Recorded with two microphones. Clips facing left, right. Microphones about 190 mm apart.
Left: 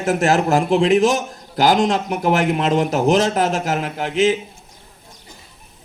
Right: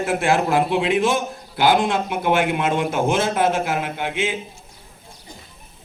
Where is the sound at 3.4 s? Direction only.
80° left.